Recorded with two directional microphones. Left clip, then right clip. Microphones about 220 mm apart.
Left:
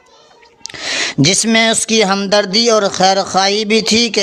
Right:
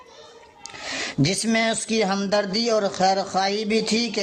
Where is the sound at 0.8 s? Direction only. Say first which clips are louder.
Left 10 dB; 30° left (ahead or behind).